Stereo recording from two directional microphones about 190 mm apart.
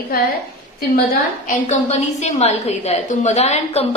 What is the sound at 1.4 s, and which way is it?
A woman's voice, 40° left (ahead or behind).